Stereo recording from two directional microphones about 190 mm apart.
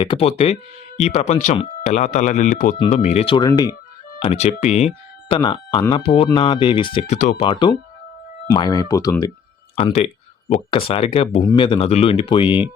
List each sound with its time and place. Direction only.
0.0 s speech: 30° left (ahead or behind)
4.2 s speech: 35° left (ahead or behind)
7.2 s speech: 40° left (ahead or behind)
7.4 s speech: 25° left (ahead or behind)
9.7 s speech: 30° left (ahead or behind)